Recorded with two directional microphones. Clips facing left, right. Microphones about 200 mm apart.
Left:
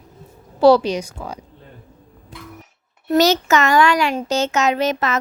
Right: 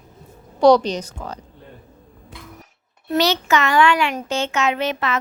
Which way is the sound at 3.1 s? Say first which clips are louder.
Left 3 dB; 45° left (ahead or behind).